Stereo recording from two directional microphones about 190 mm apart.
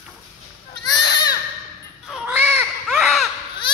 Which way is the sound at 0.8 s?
20° left (ahead or behind).